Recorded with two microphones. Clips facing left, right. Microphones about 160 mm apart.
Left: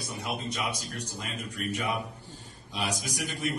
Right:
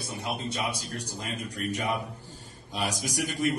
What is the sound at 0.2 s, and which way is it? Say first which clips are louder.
Speech: right 1 dB; 30° right (ahead or behind).